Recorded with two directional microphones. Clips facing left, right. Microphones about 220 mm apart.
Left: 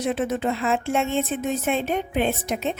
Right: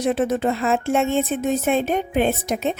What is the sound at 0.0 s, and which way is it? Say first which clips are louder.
A woman's voice: right 4 dB; 40° right (ahead or behind).